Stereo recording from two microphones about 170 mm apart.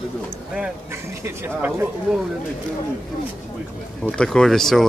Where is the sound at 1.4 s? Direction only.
15° right (ahead or behind).